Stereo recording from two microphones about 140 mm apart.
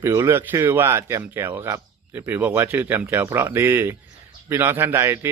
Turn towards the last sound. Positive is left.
turn(degrees=-15)  # may be behind; listen again after turning